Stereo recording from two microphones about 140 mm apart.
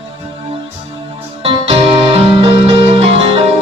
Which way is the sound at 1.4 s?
45° right (ahead or behind).